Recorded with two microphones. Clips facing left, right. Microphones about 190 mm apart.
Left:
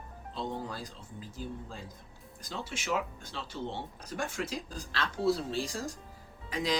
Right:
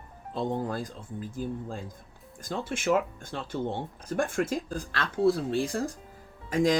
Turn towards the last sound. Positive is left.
turn(degrees=-45)  # may be behind; listen again after turning